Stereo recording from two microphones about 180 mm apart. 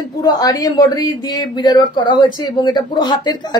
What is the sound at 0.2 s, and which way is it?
A woman's voice, 20° left (ahead or behind).